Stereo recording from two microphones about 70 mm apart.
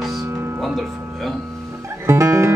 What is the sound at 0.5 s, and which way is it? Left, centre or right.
Speech, centre.